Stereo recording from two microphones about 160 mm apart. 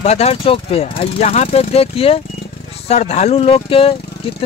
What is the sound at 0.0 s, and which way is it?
Speech, 40° left (ahead or behind).